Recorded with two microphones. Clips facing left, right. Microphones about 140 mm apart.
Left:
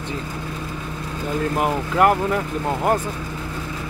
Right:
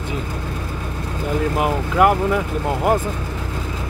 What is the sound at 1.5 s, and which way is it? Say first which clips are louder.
Speech: right 1 dB; 5° right (ahead or behind).